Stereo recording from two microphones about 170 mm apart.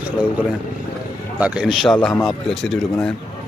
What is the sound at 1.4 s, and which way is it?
Speech, 5° right (ahead or behind).